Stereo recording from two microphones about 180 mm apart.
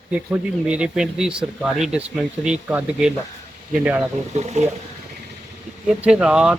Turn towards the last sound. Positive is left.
turn(degrees=-5)  # may be behind; listen again after turning